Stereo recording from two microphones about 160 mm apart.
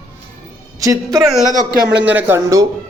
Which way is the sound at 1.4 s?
60° right (ahead or behind).